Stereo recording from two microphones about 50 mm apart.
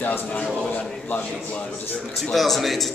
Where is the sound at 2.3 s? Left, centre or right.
Centre.